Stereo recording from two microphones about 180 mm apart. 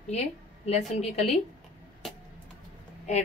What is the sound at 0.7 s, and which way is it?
Speech, 35° left (ahead or behind).